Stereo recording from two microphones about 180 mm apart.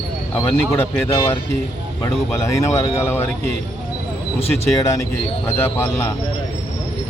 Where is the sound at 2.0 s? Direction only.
15° left (ahead or behind).